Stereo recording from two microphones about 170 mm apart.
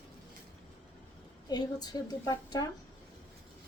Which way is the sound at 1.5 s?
25° left (ahead or behind).